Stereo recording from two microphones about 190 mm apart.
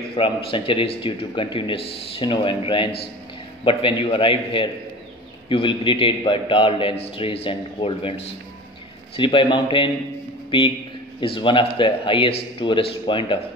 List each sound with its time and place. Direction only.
0.1 s speech: 30° left (ahead or behind)
9.1 s speech: 25° left (ahead or behind)